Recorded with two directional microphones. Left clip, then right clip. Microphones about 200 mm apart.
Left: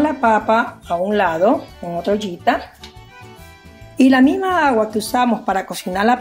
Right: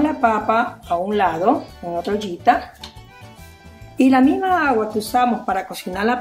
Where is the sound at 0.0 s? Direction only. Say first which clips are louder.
Left 2 dB; 45° left (ahead or behind).